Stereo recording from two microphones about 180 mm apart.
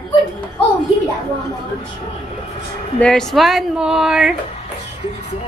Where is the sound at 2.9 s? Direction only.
5° left (ahead or behind).